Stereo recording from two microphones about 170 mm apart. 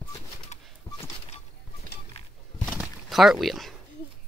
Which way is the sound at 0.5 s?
40° left (ahead or behind).